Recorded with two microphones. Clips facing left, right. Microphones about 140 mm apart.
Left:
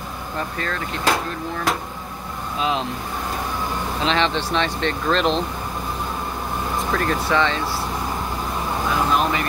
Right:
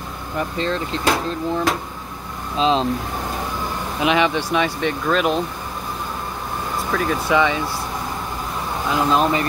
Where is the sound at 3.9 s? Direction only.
10° right (ahead or behind).